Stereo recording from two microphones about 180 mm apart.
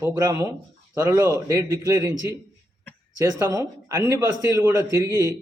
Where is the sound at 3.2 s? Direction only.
20° right (ahead or behind).